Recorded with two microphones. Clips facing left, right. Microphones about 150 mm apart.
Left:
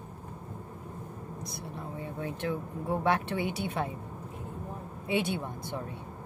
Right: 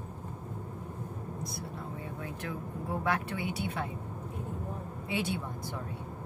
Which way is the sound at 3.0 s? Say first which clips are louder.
Left 4 dB; 25° left (ahead or behind).